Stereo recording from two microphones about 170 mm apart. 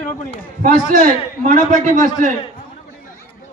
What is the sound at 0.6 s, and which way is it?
A man's voice, 45° right (ahead or behind).